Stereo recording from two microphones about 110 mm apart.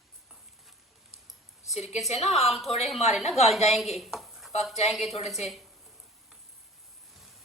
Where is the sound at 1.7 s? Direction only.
80° left.